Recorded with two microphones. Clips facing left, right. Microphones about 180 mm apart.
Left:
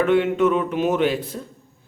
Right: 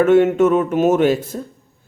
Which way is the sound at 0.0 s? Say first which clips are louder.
Right 5 dB; 45° right (ahead or behind).